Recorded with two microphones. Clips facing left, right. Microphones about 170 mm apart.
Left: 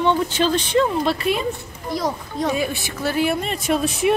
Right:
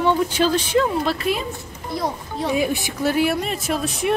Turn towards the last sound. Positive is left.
turn(degrees=0)  # may be behind; listen again after turning